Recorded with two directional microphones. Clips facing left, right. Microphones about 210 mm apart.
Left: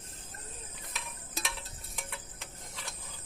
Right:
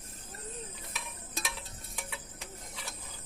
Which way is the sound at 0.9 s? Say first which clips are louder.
Left 1 dB; centre (ahead or behind).